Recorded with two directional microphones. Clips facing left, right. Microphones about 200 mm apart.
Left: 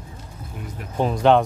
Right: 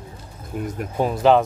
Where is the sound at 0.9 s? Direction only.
5° right (ahead or behind).